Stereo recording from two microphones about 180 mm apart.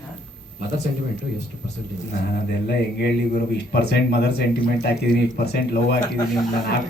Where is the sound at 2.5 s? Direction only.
60° left (ahead or behind).